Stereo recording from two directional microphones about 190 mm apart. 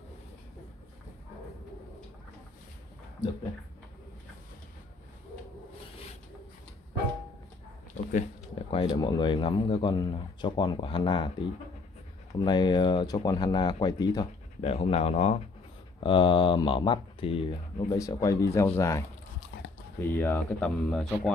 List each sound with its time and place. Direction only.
8.1 s a sound: 35° left (ahead or behind)
8.9 s speech: 20° left (ahead or behind)
12.4 s speech: 25° left (ahead or behind)
14.7 s speech: 35° left (ahead or behind)
17.9 s speech: 15° left (ahead or behind)